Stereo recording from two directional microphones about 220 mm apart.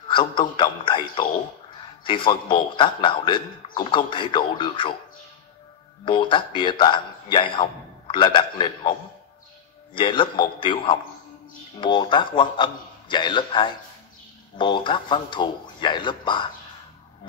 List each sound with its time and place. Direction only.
0.4 s a man's voice: 20° left (ahead or behind)
6.0 s a man's voice: 20° left (ahead or behind)
9.9 s a man's voice: 25° left (ahead or behind)